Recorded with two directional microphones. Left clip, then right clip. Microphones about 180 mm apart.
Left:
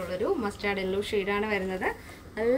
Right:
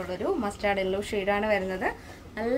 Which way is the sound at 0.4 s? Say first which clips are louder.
Right 3 dB; 30° right (ahead or behind).